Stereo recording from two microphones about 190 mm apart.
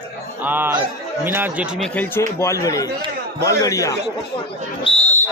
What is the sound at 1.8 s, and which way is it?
Speech, 10° left (ahead or behind).